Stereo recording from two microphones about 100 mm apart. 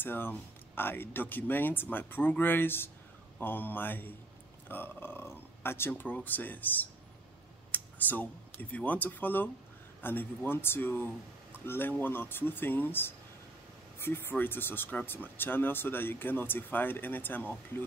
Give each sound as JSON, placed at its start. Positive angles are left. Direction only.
{"t": 0.0, "sound": "speech", "side_deg": 20}